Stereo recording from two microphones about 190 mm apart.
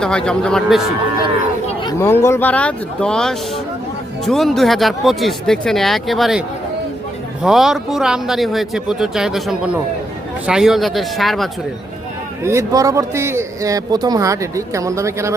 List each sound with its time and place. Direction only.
0.0 s a man's voice: 5° left (ahead or behind)
1.6 s a man's voice: 20° left (ahead or behind); by 6.4 s centre (ahead or behind)
7.4 s a man's voice: centre (ahead or behind)
12.4 s a man's voice: 15° right (ahead or behind)